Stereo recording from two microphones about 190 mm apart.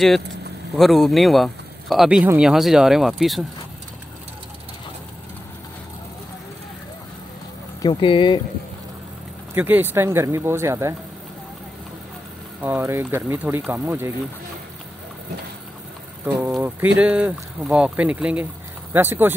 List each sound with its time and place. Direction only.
0.7 s speech: centre (ahead or behind)
7.8 s speech: 25° left (ahead or behind)
9.5 s speech: 10° right (ahead or behind)
12.6 s speech: 10° right (ahead or behind)
16.5 s speech: 10° right (ahead or behind)